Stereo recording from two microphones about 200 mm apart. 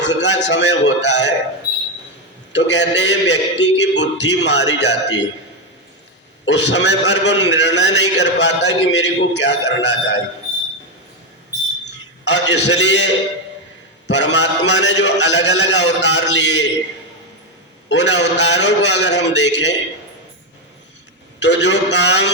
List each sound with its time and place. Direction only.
0.0 s a sound: 60° left (ahead or behind)
0.4 s a man's voice: 65° left (ahead or behind)
2.5 s a man's voice: 60° left (ahead or behind)
6.4 s a man's voice: 60° left (ahead or behind)
11.9 s a man's voice: 60° left (ahead or behind)
14.1 s a man's voice: 60° left (ahead or behind)
17.8 s a man's voice: 60° left (ahead or behind)
21.4 s a man's voice: 60° left (ahead or behind)